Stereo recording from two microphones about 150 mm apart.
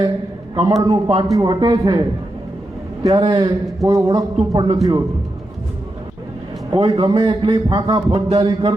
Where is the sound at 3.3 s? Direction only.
30° right (ahead or behind).